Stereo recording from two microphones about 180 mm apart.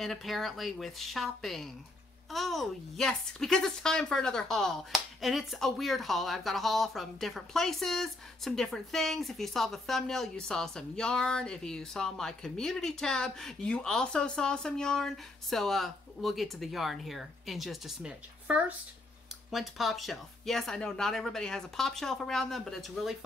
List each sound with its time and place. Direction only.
0.0 s speech: centre (ahead or behind)